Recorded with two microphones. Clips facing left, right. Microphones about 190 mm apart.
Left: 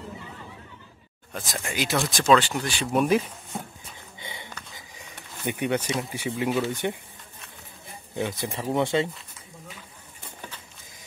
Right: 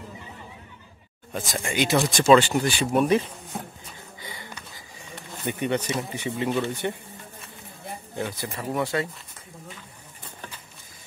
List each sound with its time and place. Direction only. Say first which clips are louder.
1.3 s speech: right 4 dB; centre (ahead or behind)
5.4 s speech: even; 10° left (ahead or behind)
8.3 s speech: left 2 dB; 20° left (ahead or behind)